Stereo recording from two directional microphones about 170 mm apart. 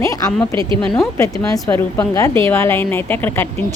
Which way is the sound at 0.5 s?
30° right (ahead or behind).